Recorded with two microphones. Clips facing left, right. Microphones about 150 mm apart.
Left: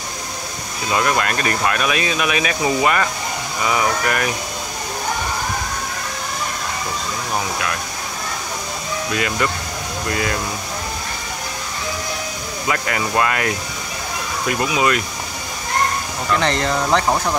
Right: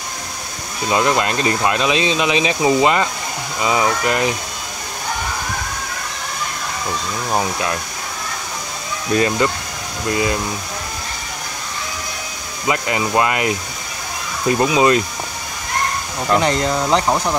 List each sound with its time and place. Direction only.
0.8 s speech: 20° right (ahead or behind)
9.1 s speech: 30° right (ahead or behind)
12.6 s speech: 20° right (ahead or behind)
16.3 s speech: 15° right (ahead or behind)